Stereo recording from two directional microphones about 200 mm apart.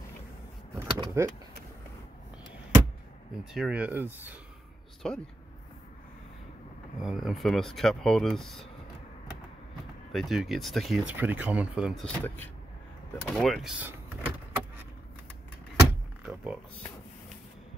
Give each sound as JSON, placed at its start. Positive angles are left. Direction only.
{"t": 0.7, "sound": "speech", "side_deg": -15}
{"t": 3.5, "sound": "speech", "side_deg": -5}
{"t": 5.0, "sound": "speech", "side_deg": 5}
{"t": 7.0, "sound": "speech", "side_deg": 0}
{"t": 10.1, "sound": "speech", "side_deg": 0}
{"t": 15.8, "sound": "vehicle", "side_deg": -5}